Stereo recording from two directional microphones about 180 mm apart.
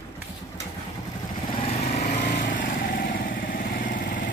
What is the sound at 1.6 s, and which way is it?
Lawn mower, 35° left (ahead or behind).